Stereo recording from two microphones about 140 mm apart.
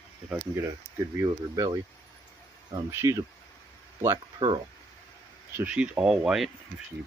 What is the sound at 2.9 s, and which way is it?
Speech, 20° right (ahead or behind).